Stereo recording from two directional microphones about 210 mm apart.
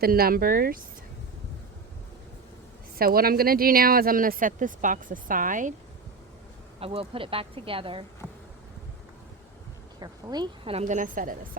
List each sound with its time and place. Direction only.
0.0 s speech: 45° right (ahead or behind)
3.0 s speech: 45° right (ahead or behind)
6.7 s speech: 25° right (ahead or behind)
10.0 s speech: 20° right (ahead or behind); by 11.3 s 40° right (ahead or behind)